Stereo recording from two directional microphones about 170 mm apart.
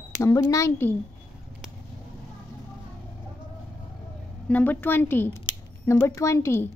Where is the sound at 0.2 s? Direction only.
20° left (ahead or behind).